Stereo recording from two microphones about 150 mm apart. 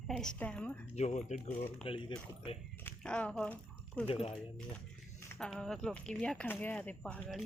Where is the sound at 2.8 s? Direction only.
10° left (ahead or behind).